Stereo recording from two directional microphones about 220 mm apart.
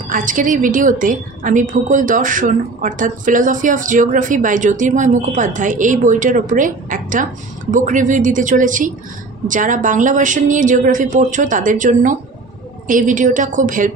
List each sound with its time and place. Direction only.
0.1 s a woman's voice: 35° right (ahead or behind)